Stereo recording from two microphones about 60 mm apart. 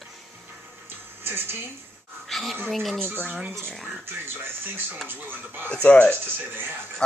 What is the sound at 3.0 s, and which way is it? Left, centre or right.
Speech, right.